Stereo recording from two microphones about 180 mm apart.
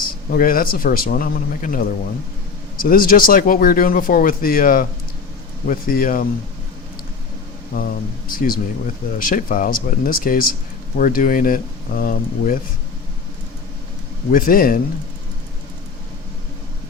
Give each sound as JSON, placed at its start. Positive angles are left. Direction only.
{"t": 0.3, "sound": "speech", "side_deg": 50}
{"t": 7.7, "sound": "speech", "side_deg": 55}
{"t": 14.3, "sound": "speech", "side_deg": 50}